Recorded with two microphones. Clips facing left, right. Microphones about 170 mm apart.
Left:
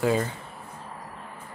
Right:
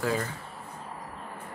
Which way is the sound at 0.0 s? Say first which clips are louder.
Left 5 dB; 20° left (ahead or behind).